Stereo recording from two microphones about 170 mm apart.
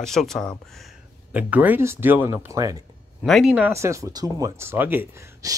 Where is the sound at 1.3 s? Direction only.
10° right (ahead or behind).